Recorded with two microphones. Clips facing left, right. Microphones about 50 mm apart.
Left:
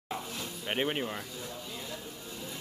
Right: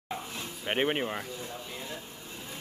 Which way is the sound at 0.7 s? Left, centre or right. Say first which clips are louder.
Right 3 dB; right.